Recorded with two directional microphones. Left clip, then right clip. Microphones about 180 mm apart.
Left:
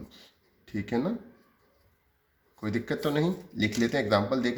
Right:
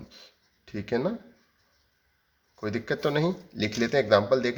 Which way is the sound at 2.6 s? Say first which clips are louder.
Right 2 dB; 30° right (ahead or behind).